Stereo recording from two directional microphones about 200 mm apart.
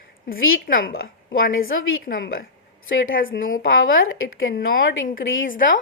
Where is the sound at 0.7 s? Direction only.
75° left (ahead or behind).